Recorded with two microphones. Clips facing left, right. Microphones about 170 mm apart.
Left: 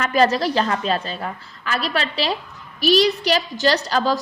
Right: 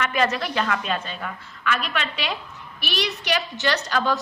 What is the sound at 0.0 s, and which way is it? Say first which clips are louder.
A woman's voice: left 6 dB; 35° left (ahead or behind).